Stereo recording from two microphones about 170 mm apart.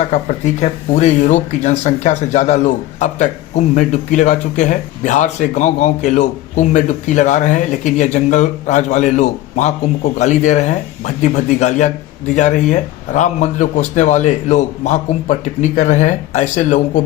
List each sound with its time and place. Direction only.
0.1 s speech: 45° left (ahead or behind)